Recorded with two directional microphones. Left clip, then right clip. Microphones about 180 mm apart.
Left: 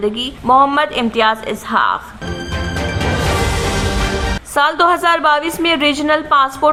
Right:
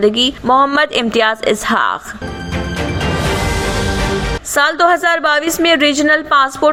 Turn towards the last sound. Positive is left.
turn(degrees=-15)  # may be behind; listen again after turning